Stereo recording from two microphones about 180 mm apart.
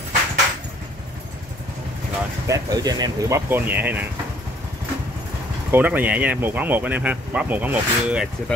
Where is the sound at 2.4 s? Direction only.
20° right (ahead or behind).